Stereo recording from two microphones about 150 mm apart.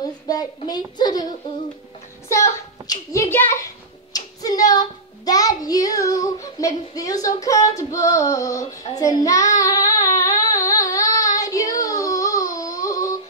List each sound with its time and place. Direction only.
0.3 s child singing: 25° left (ahead or behind)